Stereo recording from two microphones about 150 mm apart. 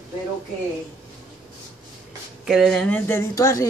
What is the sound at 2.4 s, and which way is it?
Speech, 5° right (ahead or behind).